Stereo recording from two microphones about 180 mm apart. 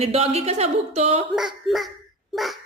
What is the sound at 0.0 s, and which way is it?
A woman's voice, 35° right (ahead or behind).